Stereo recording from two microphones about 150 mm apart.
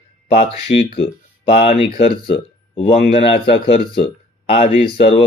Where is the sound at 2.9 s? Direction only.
45° left (ahead or behind).